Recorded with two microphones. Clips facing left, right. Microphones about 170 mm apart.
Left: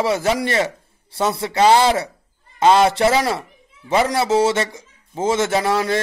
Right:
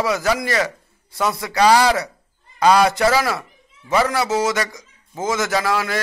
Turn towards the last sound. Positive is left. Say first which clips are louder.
# left 2 dB
turn(degrees=25)  # may be behind; listen again after turning